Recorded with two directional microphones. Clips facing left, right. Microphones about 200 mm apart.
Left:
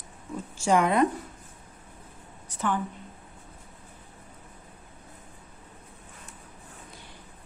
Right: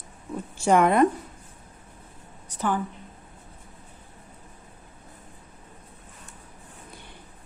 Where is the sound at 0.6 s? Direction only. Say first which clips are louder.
Right 3 dB; 55° right (ahead or behind).